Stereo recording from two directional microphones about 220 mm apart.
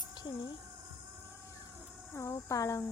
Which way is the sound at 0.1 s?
20° left (ahead or behind).